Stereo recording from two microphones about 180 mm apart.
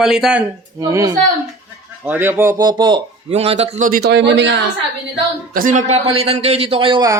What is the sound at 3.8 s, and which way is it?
Speech, 60° right (ahead or behind).